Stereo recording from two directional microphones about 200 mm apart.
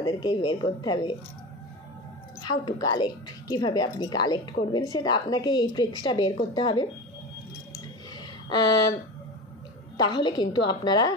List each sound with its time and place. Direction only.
0.0 s a woman's voice: 25° left (ahead or behind)
2.4 s a woman's voice: 20° left (ahead or behind)
10.0 s a woman's voice: 20° left (ahead or behind)